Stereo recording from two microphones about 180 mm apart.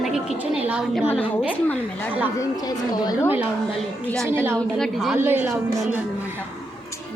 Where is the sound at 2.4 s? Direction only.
20° left (ahead or behind).